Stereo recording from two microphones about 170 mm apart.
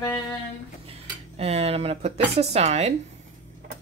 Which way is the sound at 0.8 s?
35° right (ahead or behind).